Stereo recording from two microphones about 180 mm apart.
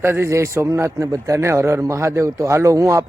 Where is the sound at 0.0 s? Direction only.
15° right (ahead or behind).